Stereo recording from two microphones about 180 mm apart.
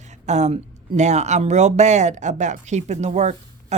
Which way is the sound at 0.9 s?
40° right (ahead or behind).